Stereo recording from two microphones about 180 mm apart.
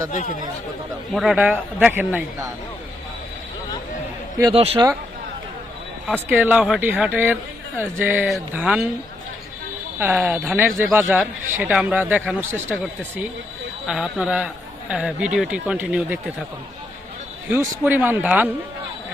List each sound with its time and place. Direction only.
1.1 s speech: centre (ahead or behind)
4.5 s speech: 30° right (ahead or behind)
6.2 s a man's voice: 10° right (ahead or behind)
10.0 s a man's voice: 10° right (ahead or behind)
17.5 s speech: 10° right (ahead or behind)